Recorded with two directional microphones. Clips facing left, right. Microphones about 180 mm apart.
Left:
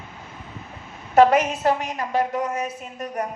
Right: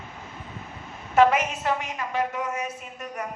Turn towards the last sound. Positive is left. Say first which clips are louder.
# left 6 dB
turn(degrees=35)  # may be behind; listen again after turning